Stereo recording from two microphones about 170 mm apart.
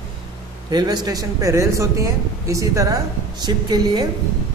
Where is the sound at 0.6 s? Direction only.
25° right (ahead or behind).